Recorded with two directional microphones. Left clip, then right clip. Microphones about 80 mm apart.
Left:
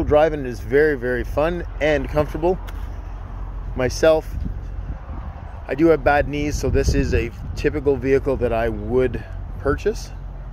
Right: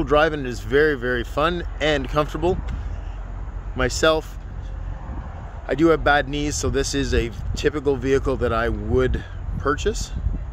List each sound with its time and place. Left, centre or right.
0.0 s speech: centre
3.7 s speech: centre
5.7 s speech: centre